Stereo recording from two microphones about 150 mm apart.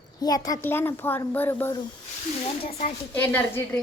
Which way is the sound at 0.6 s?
15° left (ahead or behind).